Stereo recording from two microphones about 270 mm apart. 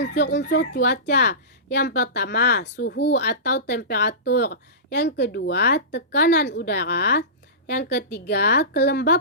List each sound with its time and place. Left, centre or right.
0.0 s speech: left